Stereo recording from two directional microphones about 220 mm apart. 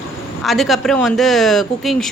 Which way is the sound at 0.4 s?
Centre (ahead or behind).